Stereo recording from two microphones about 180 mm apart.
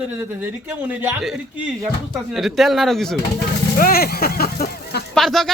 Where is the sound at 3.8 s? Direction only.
55° left (ahead or behind).